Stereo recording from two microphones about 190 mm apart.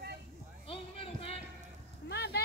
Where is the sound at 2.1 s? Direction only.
60° left (ahead or behind).